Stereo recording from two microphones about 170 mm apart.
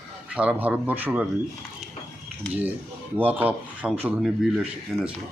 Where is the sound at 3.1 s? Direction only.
10° right (ahead or behind).